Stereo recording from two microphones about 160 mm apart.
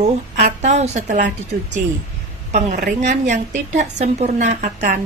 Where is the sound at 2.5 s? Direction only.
65° right (ahead or behind).